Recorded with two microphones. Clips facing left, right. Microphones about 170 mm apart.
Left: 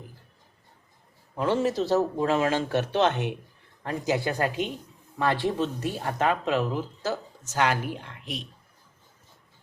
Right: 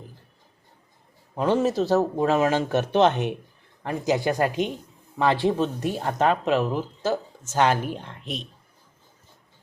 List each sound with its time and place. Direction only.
1.4 s speech: 20° right (ahead or behind)